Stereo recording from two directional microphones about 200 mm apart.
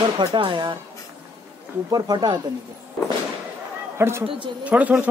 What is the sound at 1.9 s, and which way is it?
Speech, 20° right (ahead or behind).